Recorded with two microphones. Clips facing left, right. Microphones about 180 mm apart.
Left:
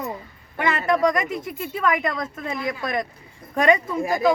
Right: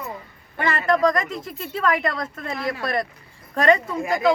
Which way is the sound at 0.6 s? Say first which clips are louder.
Even; 5° left (ahead or behind).